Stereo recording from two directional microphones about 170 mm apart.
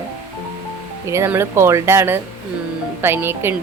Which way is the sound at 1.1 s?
15° right (ahead or behind).